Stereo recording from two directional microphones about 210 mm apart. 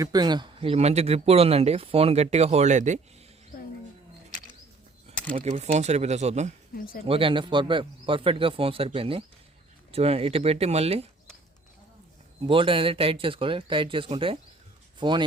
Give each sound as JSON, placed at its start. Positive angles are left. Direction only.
{"t": 0.0, "sound": "speech", "side_deg": -20}
{"t": 5.3, "sound": "speech", "side_deg": -30}
{"t": 6.7, "sound": "speech", "side_deg": 45}
{"t": 7.0, "sound": "speech", "side_deg": -25}
{"t": 12.5, "sound": "speech", "side_deg": -25}